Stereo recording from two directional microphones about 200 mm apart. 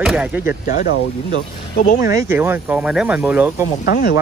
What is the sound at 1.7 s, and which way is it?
Speech, 50° left (ahead or behind).